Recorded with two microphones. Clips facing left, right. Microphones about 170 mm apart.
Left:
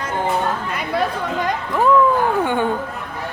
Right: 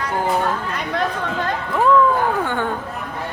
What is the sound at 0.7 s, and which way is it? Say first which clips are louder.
Chatter: left 1 dB; 10° left (ahead or behind).